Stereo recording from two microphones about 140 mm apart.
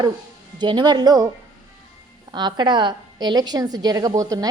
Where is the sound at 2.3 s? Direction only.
30° right (ahead or behind).